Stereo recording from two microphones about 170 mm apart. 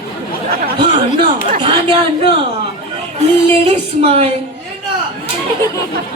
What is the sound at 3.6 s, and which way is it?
Speech, 35° right (ahead or behind).